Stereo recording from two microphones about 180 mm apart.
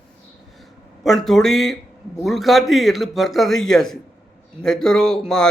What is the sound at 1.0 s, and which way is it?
A man's voice, centre (ahead or behind).